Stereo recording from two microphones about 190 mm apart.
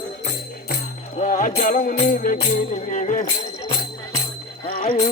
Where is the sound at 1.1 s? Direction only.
45° left (ahead or behind).